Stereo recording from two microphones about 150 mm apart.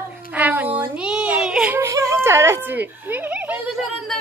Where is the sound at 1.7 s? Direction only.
20° right (ahead or behind).